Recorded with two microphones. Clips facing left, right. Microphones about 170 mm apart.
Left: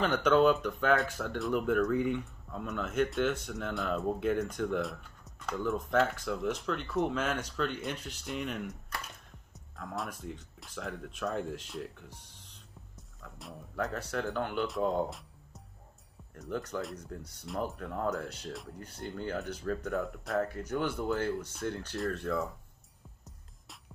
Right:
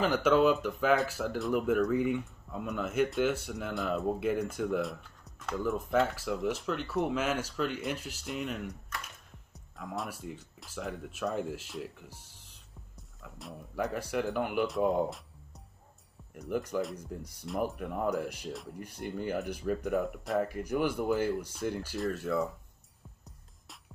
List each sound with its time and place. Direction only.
0.0 s speech: 5° right (ahead or behind)
12.9 s music: centre (ahead or behind)
13.9 s speech: 10° right (ahead or behind)
14.8 s music: 10° right (ahead or behind)
16.3 s speech: 10° right (ahead or behind)